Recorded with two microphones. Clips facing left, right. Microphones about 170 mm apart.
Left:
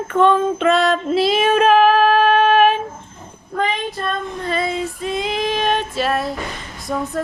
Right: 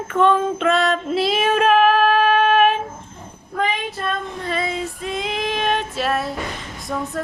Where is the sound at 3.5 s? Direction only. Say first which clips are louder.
Left 2 dB; centre (ahead or behind).